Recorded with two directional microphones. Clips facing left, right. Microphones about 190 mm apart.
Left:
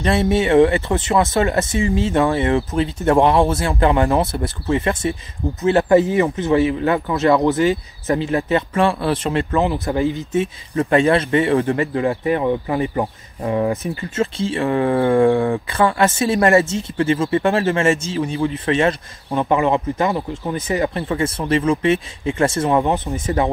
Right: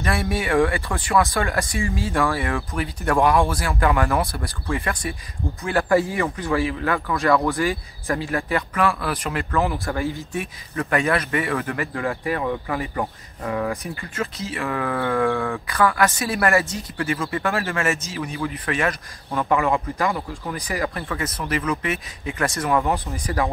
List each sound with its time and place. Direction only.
0.0 s speech: 25° left (ahead or behind)